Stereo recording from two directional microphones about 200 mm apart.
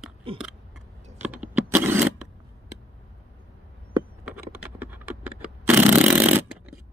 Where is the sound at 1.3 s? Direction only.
10° right (ahead or behind).